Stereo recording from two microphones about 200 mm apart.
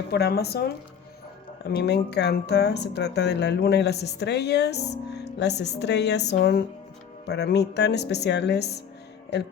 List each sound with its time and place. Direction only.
0.1 s speech: 55° left (ahead or behind)